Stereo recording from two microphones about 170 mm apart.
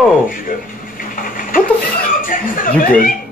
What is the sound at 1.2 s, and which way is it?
Dog, 55° left (ahead or behind).